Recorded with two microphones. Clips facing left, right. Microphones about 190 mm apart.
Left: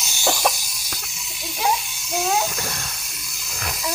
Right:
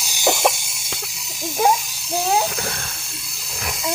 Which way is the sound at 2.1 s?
30° right (ahead or behind).